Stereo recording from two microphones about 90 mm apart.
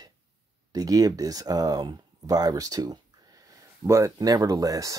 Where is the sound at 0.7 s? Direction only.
45° right (ahead or behind).